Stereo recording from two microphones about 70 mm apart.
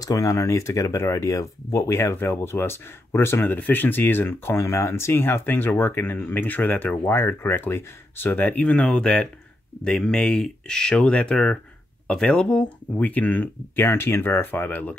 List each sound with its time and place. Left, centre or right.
0.0 s speech: left